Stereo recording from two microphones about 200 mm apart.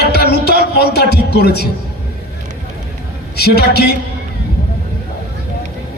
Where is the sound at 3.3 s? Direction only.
50° left (ahead or behind).